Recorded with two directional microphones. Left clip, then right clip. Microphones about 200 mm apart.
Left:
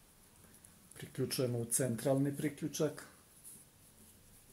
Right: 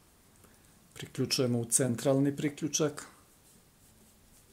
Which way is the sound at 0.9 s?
35° right (ahead or behind).